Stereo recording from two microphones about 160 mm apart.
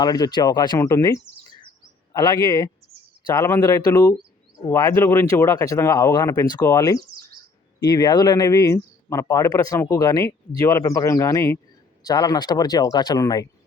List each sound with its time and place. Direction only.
0.0 s speech: 25° left (ahead or behind)